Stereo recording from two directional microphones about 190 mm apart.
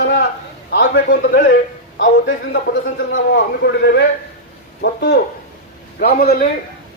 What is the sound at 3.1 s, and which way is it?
A man's voice, 60° left (ahead or behind).